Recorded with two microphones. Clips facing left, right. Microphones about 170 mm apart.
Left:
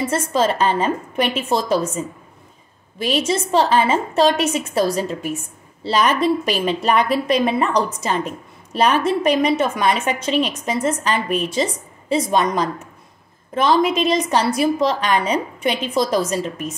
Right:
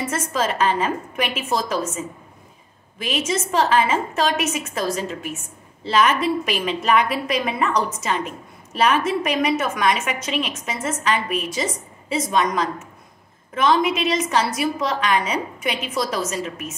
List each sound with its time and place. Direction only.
0.0 s a woman's voice: 30° left (ahead or behind)